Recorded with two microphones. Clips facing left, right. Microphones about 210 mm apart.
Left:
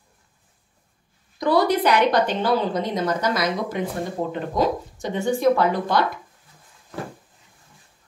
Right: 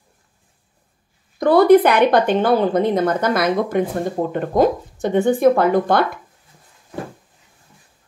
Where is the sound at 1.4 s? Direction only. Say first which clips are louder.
Right 8 dB; 55° right (ahead or behind).